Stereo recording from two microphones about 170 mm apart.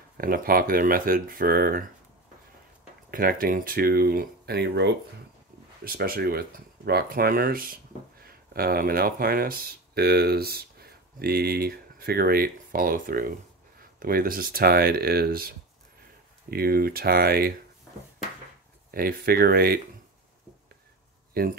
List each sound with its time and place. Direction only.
0.2 s speech: 60° right (ahead or behind)
3.1 s speech: 55° right (ahead or behind); by 4.9 s 80° right
5.9 s speech: 60° right (ahead or behind)
18.9 s speech: 60° right (ahead or behind)
21.3 s a sound: 60° right (ahead or behind)